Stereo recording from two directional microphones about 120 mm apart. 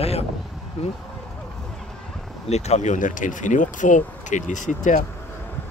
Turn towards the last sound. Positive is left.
turn(degrees=90)